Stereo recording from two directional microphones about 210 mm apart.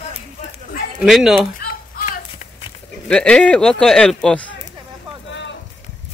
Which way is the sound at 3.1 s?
5° left (ahead or behind).